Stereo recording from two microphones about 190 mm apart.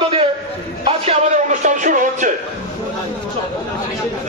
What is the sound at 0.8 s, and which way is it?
Speech, 35° right (ahead or behind).